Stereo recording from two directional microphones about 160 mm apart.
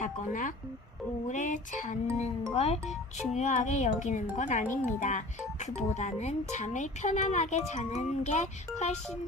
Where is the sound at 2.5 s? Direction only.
40° left (ahead or behind).